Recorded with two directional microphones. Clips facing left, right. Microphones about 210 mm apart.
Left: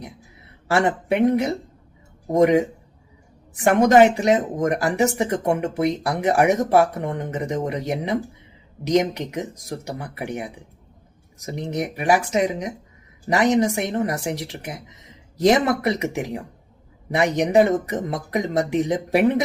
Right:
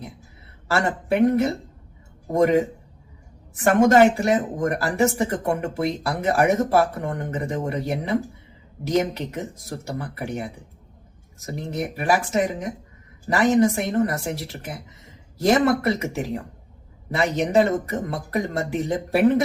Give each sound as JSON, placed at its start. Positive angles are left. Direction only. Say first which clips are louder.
{"t": 0.7, "sound": "speech", "louder": "left 2 dB", "side_deg": 20}
{"t": 3.6, "sound": "speech", "louder": "left 1 dB", "side_deg": 15}